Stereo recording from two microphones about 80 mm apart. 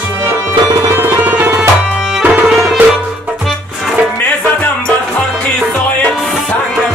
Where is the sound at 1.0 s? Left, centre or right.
Right.